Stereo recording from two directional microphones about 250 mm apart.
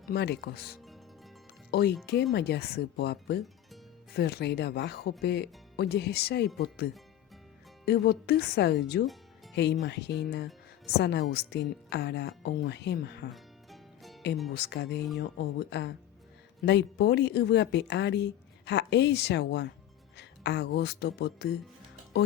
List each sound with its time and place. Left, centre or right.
0.1 s speech: left
13.3 s music: centre
14.5 s speech: left